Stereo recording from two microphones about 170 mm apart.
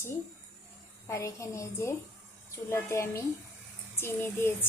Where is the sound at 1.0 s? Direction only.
20° left (ahead or behind).